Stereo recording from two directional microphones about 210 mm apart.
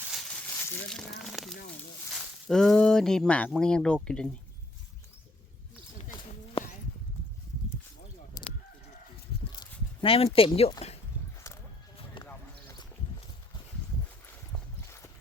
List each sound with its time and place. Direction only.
0.0 s crumpling: centre (ahead or behind)
1.2 s speech: centre (ahead or behind)
8.4 s chicken: 15° left (ahead or behind)
10.0 s speech: 25° left (ahead or behind)
11.9 s basketball bounce: 25° left (ahead or behind)
12.3 s basketball bounce: 15° left (ahead or behind)
14.5 s a sound: 15° left (ahead or behind)